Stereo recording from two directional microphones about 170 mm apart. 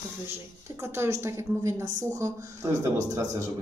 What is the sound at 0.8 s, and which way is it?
Speech, 15° right (ahead or behind).